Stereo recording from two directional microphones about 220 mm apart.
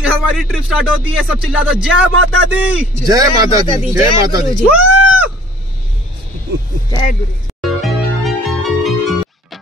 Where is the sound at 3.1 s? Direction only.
15° right (ahead or behind).